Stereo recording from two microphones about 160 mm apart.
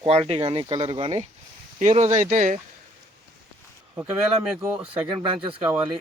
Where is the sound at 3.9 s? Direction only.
5° right (ahead or behind).